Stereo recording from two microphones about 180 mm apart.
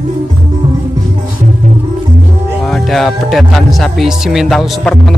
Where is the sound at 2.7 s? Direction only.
Centre (ahead or behind).